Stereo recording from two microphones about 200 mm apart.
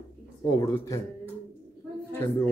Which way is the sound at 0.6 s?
15° left (ahead or behind).